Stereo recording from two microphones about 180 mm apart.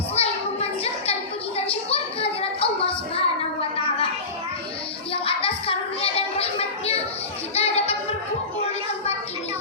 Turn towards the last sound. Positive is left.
turn(degrees=35)  # may be behind; listen again after turning